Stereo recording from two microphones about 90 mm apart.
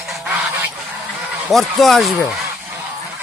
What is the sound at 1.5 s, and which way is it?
Speech, centre (ahead or behind).